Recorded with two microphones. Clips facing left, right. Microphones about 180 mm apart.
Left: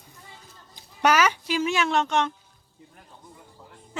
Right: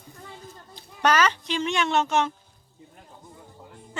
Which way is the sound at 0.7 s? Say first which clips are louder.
Left 1 dB; 10° left (ahead or behind).